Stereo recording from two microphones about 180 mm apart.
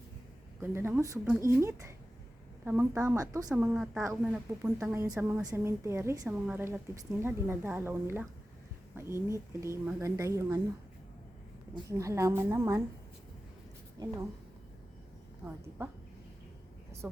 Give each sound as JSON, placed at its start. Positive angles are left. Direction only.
{"t": 0.6, "sound": "a woman's voice", "side_deg": -15}
{"t": 11.7, "sound": "a woman's voice", "side_deg": -15}
{"t": 15.4, "sound": "a woman's voice", "side_deg": 0}